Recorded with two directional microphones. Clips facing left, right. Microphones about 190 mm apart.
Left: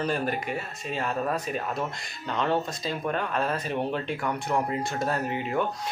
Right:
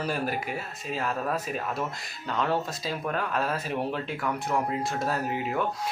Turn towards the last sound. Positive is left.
turn(degrees=0)  # may be behind; listen again after turning